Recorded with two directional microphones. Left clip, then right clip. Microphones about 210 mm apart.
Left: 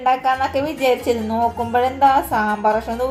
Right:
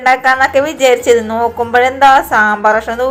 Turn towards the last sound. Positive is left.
turn(degrees=-10)  # may be behind; listen again after turning